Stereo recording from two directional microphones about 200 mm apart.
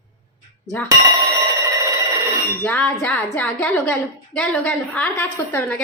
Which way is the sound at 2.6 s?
5° left (ahead or behind).